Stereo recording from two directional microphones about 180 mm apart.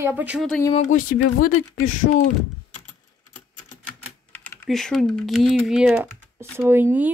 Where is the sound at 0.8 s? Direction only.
45° left (ahead or behind).